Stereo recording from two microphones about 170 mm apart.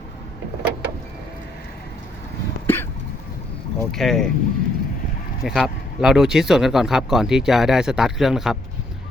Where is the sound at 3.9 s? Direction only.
Centre (ahead or behind).